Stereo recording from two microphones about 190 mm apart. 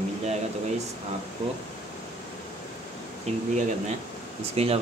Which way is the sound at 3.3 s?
35° right (ahead or behind).